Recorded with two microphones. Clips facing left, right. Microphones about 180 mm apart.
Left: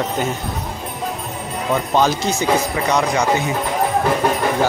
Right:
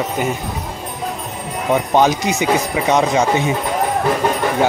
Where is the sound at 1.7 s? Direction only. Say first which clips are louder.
Right 3 dB; 15° right (ahead or behind).